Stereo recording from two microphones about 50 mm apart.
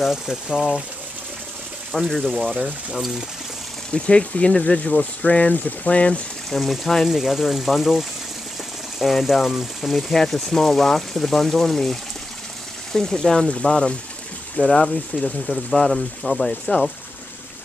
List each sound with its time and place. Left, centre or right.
0.0 s speech: centre
2.0 s speech: centre
3.9 s speech: left
6.5 s speech: centre